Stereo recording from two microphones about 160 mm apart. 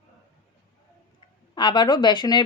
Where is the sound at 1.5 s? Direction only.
30° left (ahead or behind).